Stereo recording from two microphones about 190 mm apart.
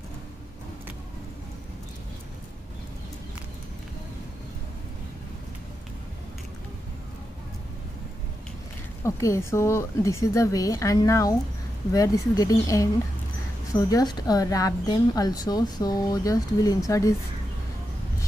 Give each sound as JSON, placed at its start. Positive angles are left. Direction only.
{"t": 9.0, "sound": "a woman's voice", "side_deg": 15}